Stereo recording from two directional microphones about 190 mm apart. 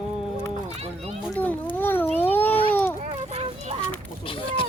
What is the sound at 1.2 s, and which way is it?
A child's voice, 5° left (ahead or behind).